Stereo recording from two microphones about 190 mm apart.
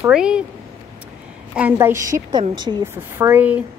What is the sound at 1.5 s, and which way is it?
Speech, 10° right (ahead or behind).